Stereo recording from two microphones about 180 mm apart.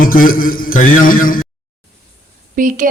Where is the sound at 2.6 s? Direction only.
45° right (ahead or behind).